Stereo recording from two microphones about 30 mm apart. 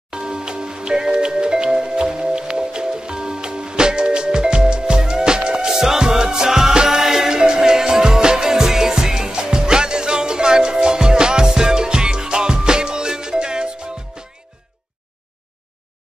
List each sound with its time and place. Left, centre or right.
0.1 s music: right